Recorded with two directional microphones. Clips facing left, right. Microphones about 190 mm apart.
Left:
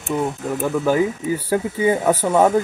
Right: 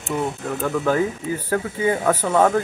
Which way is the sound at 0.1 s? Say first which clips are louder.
Left 2 dB; 10° left (ahead or behind).